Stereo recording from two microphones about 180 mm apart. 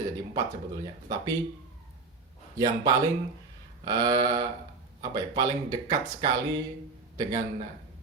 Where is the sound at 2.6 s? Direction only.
20° right (ahead or behind).